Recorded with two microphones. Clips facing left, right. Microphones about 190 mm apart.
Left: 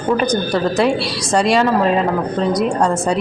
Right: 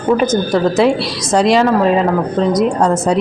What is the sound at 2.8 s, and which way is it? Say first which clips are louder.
Speech: right 3 dB; 20° right (ahead or behind).